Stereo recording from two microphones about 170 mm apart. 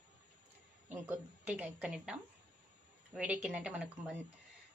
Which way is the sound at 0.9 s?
10° right (ahead or behind).